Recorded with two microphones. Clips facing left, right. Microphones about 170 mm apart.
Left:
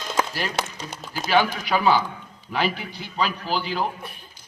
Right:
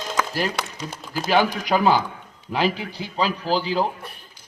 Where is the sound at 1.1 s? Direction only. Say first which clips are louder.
Right 1 dB; 40° right (ahead or behind).